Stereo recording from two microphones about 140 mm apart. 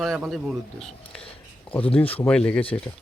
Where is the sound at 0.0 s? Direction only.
Centre (ahead or behind).